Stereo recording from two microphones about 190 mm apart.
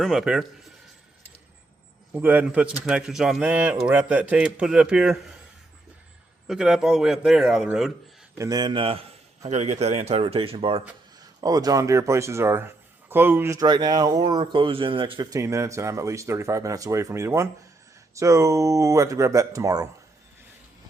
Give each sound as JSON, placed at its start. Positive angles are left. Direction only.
{"t": 0.0, "sound": "speech", "side_deg": 0}
{"t": 2.1, "sound": "speech", "side_deg": -10}
{"t": 6.5, "sound": "speech", "side_deg": -5}
{"t": 8.4, "sound": "a man's voice", "side_deg": -20}